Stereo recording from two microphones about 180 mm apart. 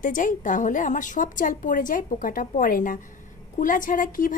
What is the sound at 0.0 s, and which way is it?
A woman's voice, 45° left (ahead or behind).